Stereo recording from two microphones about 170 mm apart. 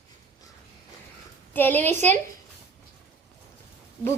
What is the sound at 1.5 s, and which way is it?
Speech, 10° left (ahead or behind).